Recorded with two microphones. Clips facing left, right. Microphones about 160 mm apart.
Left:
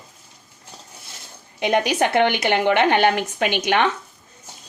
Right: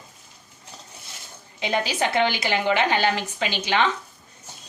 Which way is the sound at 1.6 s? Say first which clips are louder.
Left 5 dB; 60° left (ahead or behind).